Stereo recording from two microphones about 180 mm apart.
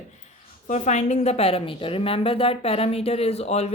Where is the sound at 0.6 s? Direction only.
40° left (ahead or behind).